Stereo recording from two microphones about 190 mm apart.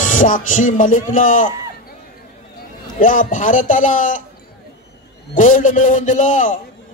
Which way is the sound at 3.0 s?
45° left (ahead or behind).